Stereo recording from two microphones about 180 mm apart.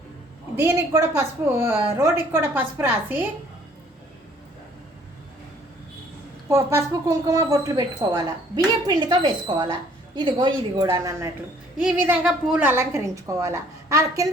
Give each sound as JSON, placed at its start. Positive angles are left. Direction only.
{"t": 0.5, "sound": "a woman's voice", "side_deg": -15}
{"t": 6.5, "sound": "a woman's voice", "side_deg": -15}